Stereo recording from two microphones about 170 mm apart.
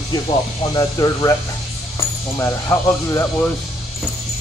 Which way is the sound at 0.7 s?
25° left (ahead or behind).